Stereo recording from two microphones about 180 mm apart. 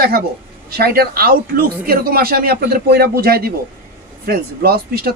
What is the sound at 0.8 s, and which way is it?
Speech, 55° right (ahead or behind).